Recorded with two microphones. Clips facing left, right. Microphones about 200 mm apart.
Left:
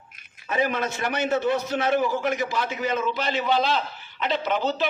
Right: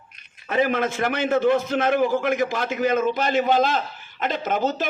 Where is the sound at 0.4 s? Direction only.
50° right (ahead or behind).